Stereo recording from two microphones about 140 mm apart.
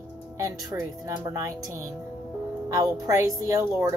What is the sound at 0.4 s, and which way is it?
A woman's voice, 25° right (ahead or behind).